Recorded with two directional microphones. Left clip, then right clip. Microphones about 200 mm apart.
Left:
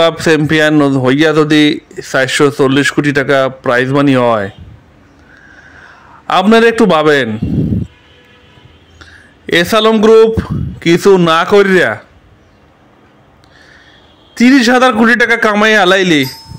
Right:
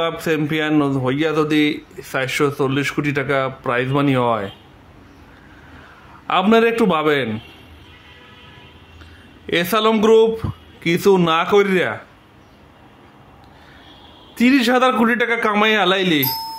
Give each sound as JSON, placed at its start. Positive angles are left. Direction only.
{"t": 0.0, "sound": "a man's voice", "side_deg": 35}
{"t": 6.4, "sound": "a man's voice", "side_deg": 30}
{"t": 9.5, "sound": "speech", "side_deg": 30}
{"t": 14.3, "sound": "speech", "side_deg": 30}